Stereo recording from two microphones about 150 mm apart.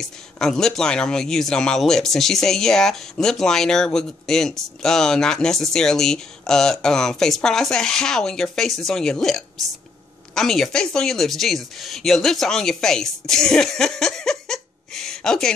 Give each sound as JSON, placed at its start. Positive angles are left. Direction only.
{"t": 0.0, "sound": "speech", "side_deg": 5}